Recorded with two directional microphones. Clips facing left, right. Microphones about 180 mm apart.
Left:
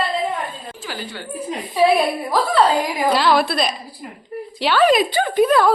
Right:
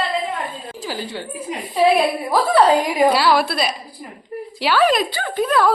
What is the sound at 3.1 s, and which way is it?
Speech, 5° right (ahead or behind).